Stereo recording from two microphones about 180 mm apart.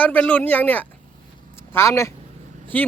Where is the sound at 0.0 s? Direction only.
10° left (ahead or behind).